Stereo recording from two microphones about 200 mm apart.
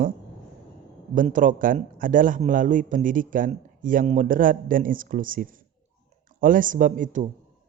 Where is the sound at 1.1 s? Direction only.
40° right (ahead or behind).